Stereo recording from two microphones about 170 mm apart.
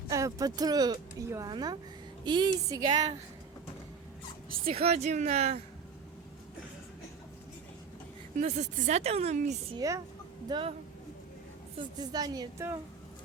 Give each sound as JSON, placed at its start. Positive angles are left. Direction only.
{"t": 0.1, "sound": "speech", "side_deg": -20}
{"t": 4.6, "sound": "speech", "side_deg": -35}
{"t": 8.4, "sound": "speech", "side_deg": -40}
{"t": 9.7, "sound": "speech", "side_deg": -20}
{"t": 10.5, "sound": "speech", "side_deg": -30}
{"t": 11.9, "sound": "speech", "side_deg": -20}